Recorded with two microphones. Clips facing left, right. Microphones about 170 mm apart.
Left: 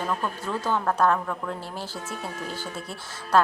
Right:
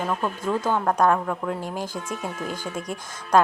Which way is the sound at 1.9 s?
50° right (ahead or behind).